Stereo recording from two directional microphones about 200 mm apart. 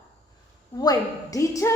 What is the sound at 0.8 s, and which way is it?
Speech, 20° left (ahead or behind).